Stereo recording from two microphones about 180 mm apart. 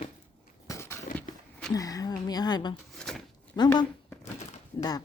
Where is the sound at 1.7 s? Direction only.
20° left (ahead or behind).